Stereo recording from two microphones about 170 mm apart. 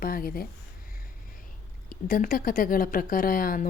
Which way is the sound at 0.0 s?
55° left (ahead or behind).